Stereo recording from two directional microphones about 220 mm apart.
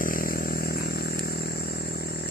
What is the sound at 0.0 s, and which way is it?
Vehicle, 40° left (ahead or behind).